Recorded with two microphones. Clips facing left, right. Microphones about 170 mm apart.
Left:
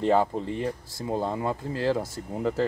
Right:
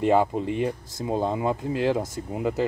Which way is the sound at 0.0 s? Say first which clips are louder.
Right 2 dB; 15° right (ahead or behind).